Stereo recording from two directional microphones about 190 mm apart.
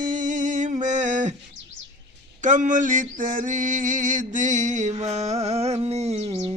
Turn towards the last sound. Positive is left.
turn(degrees=-30)  # may be behind; listen again after turning